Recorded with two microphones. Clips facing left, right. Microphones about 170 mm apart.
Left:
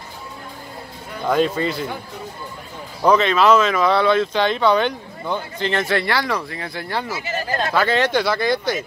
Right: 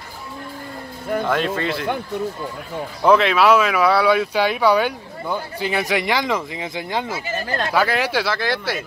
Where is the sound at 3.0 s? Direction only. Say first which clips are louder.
Even; 5° right (ahead or behind).